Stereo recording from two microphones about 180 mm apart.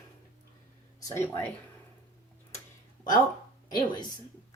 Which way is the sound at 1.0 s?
15° left (ahead or behind).